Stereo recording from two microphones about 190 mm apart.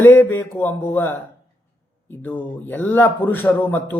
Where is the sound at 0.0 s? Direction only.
10° left (ahead or behind).